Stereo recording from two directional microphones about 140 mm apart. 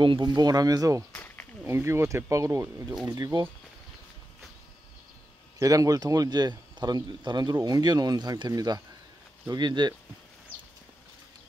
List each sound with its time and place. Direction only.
0.0 s speech: 35° right (ahead or behind)
1.1 s a sound: 10° left (ahead or behind)
1.7 s speech: 20° right (ahead or behind)
5.6 s speech: 25° right (ahead or behind)